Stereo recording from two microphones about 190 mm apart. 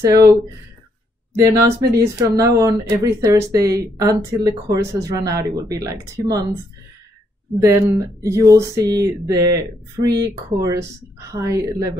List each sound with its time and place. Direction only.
0.0 s speech: 15° right (ahead or behind)
7.6 s speech: 15° right (ahead or behind)